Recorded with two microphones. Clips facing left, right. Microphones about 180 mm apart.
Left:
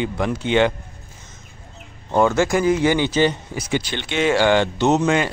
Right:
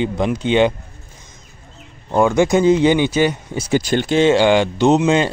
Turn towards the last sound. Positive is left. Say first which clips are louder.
# right 4 dB
turn(degrees=-20)  # may be behind; listen again after turning